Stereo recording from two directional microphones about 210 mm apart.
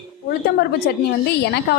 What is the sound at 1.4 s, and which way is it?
Speech, 50° left (ahead or behind).